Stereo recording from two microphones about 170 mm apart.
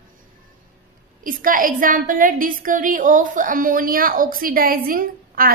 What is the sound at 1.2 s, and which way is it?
A woman's voice, 55° right (ahead or behind).